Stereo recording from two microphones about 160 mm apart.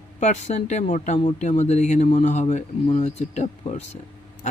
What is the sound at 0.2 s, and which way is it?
Speech, 45° left (ahead or behind).